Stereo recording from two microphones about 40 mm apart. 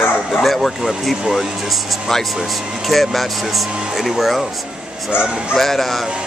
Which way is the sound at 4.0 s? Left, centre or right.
Centre.